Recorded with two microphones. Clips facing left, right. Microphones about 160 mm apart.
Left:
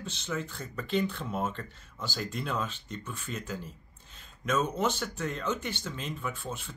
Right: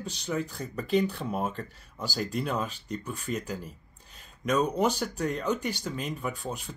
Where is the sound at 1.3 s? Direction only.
10° right (ahead or behind).